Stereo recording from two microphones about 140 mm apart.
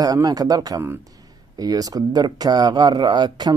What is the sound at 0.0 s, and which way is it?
Speech, 25° right (ahead or behind).